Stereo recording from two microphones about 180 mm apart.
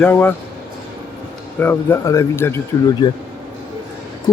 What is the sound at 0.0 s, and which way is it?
Speech, 10° left (ahead or behind).